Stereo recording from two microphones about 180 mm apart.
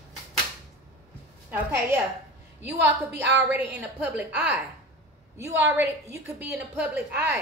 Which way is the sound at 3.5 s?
10° right (ahead or behind).